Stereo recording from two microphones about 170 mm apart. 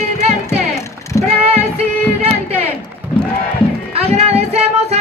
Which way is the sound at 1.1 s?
15° left (ahead or behind).